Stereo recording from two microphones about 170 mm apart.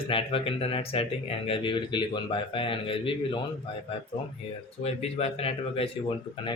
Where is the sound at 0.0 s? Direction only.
35° left (ahead or behind).